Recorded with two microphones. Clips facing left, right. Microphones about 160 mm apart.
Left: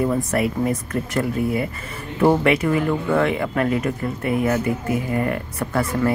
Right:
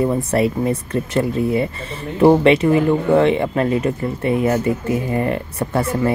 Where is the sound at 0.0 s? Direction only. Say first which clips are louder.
Right 3 dB; 25° right (ahead or behind).